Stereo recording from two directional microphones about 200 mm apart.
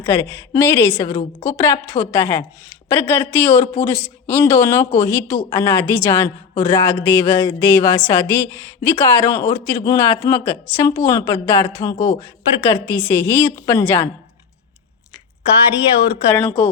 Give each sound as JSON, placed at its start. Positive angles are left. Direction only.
{"t": 0.0, "sound": "speech", "side_deg": 15}
{"t": 16.3, "sound": "speech", "side_deg": 10}